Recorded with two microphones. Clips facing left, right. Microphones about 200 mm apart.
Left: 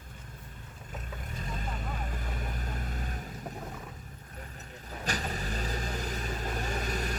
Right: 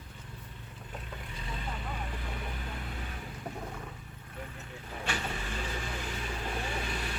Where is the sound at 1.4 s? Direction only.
45° left (ahead or behind).